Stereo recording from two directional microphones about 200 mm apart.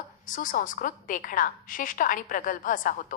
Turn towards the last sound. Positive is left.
turn(degrees=45)  # may be behind; listen again after turning